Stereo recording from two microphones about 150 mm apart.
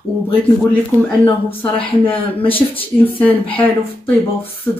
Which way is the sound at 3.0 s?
10° left (ahead or behind).